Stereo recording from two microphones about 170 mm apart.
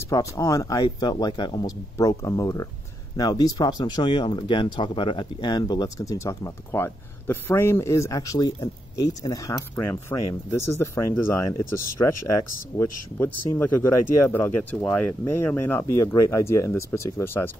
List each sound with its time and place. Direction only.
0.1 s speech: 20° left (ahead or behind)